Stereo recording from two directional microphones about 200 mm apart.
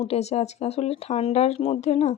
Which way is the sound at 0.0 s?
30° left (ahead or behind).